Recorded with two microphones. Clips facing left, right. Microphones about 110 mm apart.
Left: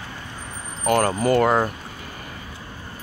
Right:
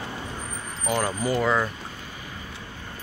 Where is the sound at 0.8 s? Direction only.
60° left (ahead or behind).